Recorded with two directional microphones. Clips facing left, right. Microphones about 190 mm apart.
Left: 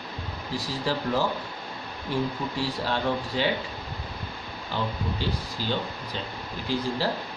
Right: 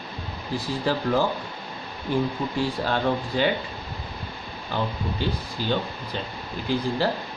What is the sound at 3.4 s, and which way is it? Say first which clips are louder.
Speech: right 4 dB; 50° right (ahead or behind).